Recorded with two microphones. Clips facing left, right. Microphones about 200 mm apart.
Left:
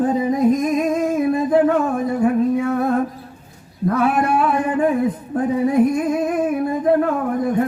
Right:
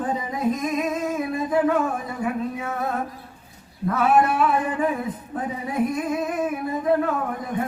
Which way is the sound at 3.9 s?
45° left (ahead or behind).